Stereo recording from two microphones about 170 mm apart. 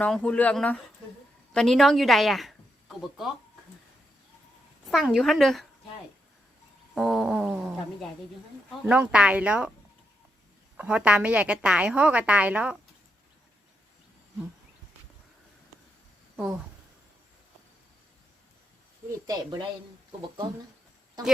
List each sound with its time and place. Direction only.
0.0 s a woman's voice: 5° left (ahead or behind)
4.9 s a woman's voice: centre (ahead or behind)
6.9 s a woman's voice: centre (ahead or behind)
8.9 s a woman's voice: 5° right (ahead or behind)
10.8 s a woman's voice: 5° right (ahead or behind)
19.3 s a woman's voice: 25° right (ahead or behind)